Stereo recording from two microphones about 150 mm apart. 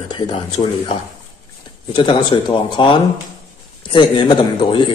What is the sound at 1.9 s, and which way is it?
A man's voice, 30° left (ahead or behind).